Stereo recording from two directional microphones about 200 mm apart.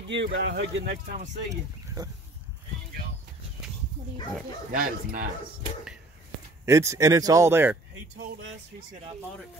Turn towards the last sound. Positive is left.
turn(degrees=-10)  # may be behind; listen again after turning